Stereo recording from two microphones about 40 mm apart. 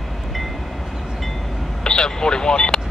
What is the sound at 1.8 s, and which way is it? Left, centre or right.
Vehicle, centre.